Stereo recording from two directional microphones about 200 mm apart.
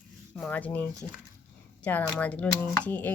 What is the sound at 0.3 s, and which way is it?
Speech, 5° left (ahead or behind).